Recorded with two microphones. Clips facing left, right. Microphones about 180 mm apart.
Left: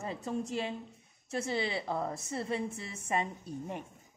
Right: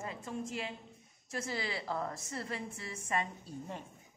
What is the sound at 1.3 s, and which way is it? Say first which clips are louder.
A woman's voice: left 5 dB; 25° left (ahead or behind).